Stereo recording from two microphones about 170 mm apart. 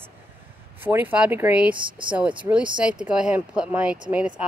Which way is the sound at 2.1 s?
10° right (ahead or behind).